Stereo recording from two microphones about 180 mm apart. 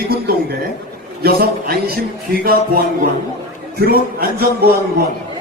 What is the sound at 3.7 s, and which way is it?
Speech, 60° right (ahead or behind).